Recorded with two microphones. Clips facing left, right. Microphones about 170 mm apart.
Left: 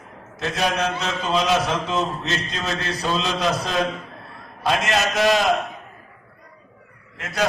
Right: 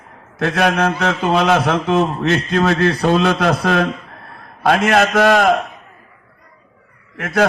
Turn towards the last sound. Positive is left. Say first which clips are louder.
# right 10 dB
turn(degrees=-55)  # may be behind; listen again after turning